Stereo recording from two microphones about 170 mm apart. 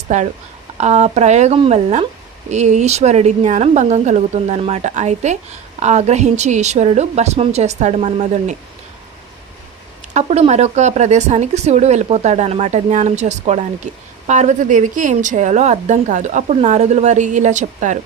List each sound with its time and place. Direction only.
0.1 s speech: 45° right (ahead or behind)
10.2 s speech: 40° right (ahead or behind)